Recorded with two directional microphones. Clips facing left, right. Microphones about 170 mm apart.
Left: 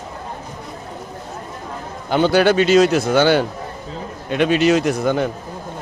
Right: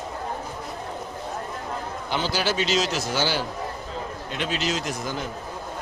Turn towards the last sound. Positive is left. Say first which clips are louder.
# left 12 dB
turn(degrees=65)  # may be behind; listen again after turning